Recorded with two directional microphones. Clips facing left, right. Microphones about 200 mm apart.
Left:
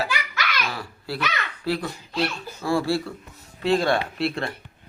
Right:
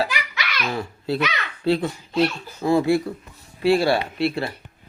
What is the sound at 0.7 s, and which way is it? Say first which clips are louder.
A child's voice: right 7 dB; 25° right (ahead or behind).